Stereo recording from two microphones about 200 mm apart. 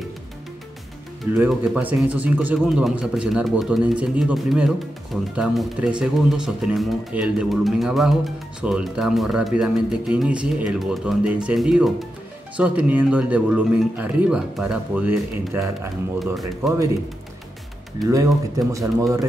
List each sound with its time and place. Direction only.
1.5 s speech: 5° right (ahead or behind)
18.1 s speech: 15° right (ahead or behind)